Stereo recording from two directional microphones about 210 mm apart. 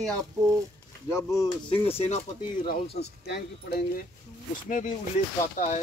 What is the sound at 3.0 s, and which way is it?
Speech, 50° left (ahead or behind).